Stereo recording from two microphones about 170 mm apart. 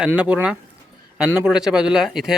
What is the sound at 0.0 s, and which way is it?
Speech, 5° right (ahead or behind).